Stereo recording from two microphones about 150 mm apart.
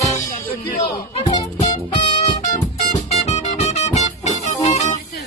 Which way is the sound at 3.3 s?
50° left (ahead or behind).